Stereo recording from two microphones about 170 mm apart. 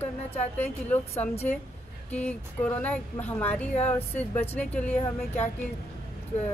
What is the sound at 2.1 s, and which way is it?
Speech, 10° left (ahead or behind).